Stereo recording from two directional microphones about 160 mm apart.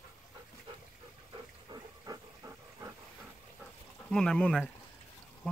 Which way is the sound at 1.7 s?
20° right (ahead or behind).